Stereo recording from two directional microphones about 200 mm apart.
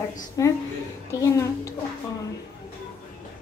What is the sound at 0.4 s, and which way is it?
A child's voice, 15° left (ahead or behind).